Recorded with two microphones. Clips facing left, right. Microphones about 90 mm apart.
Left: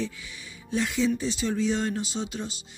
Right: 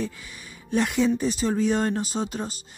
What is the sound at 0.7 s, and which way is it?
Speech, 55° right (ahead or behind).